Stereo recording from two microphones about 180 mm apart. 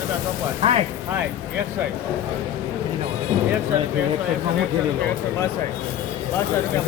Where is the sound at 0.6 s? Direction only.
35° right (ahead or behind).